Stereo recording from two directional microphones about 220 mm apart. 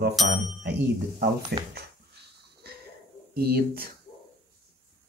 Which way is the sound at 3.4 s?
45° right (ahead or behind).